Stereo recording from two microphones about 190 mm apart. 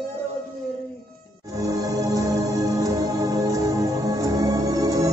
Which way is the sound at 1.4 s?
15° right (ahead or behind).